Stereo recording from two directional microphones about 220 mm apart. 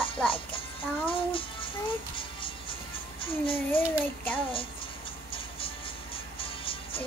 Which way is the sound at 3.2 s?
25° left (ahead or behind).